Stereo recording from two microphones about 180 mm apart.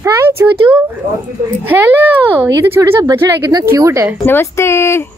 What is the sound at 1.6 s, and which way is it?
Speech, 10° right (ahead or behind).